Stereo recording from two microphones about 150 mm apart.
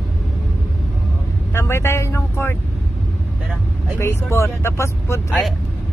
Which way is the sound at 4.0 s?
20° left (ahead or behind).